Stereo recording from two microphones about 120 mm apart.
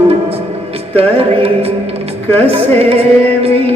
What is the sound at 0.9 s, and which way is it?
Music, 55° right (ahead or behind).